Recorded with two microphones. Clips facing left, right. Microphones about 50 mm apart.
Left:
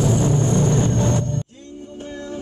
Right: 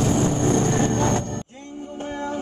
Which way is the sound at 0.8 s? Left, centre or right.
Right.